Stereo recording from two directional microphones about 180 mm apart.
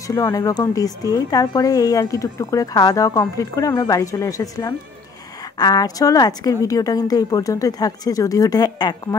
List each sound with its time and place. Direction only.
0.0 s speech: 20° left (ahead or behind)